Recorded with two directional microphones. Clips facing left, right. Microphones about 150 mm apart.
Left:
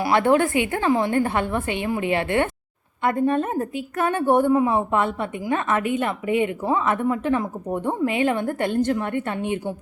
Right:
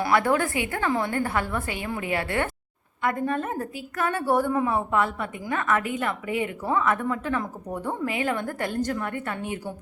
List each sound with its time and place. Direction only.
0.1 s a woman's voice: 25° left (ahead or behind)